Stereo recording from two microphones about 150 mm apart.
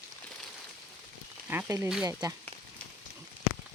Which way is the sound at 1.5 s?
15° right (ahead or behind).